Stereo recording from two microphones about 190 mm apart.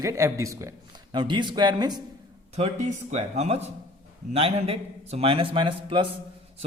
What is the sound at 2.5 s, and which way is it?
A man's voice, 35° right (ahead or behind).